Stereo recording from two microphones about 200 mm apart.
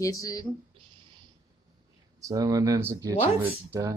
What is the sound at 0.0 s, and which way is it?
Speech, 15° left (ahead or behind).